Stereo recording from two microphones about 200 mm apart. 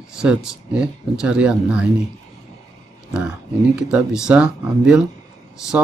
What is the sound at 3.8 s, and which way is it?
Speech, 5° right (ahead or behind).